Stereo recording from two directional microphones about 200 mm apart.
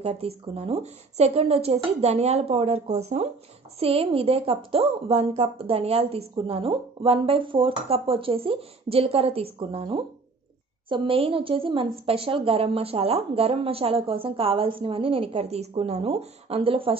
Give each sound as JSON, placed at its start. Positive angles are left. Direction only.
{"t": 0.0, "sound": "a woman's voice", "side_deg": -30}